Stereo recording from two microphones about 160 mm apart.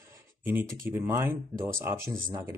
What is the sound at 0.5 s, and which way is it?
Speech, 15° right (ahead or behind).